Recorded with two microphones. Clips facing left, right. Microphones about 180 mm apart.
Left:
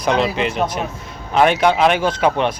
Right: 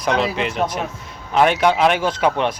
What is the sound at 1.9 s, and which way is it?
Speech, 20° left (ahead or behind).